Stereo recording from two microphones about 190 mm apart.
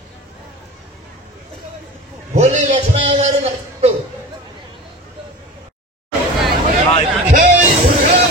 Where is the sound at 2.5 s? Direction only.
30° right (ahead or behind).